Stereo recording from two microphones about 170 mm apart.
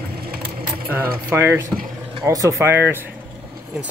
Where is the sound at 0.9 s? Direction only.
10° right (ahead or behind).